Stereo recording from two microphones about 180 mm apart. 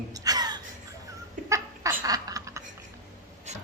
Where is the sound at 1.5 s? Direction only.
20° right (ahead or behind).